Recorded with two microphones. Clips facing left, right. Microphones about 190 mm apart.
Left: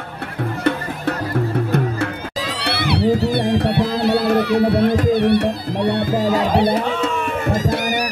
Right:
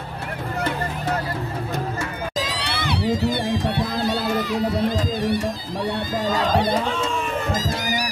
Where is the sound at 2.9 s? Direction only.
65° left (ahead or behind).